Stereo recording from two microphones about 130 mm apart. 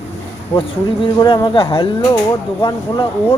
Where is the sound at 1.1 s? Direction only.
35° left (ahead or behind).